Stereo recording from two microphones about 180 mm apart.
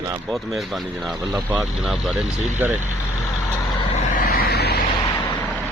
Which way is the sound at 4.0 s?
50° left (ahead or behind).